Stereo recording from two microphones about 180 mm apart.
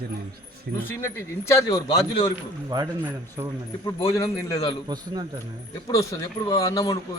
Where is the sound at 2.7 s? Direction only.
20° right (ahead or behind).